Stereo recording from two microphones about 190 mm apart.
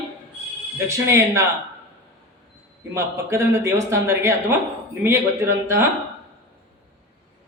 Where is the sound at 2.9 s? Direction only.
15° right (ahead or behind).